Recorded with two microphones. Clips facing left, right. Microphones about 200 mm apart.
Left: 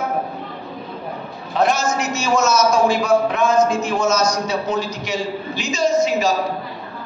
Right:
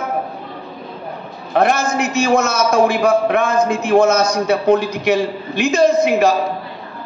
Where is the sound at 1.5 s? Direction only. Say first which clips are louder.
Right 3 dB; 60° right (ahead or behind).